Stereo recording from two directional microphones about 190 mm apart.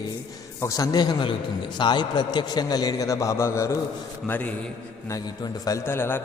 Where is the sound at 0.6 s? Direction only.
15° left (ahead or behind).